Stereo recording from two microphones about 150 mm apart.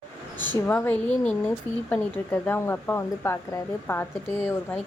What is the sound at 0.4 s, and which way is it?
Speech, 10° left (ahead or behind).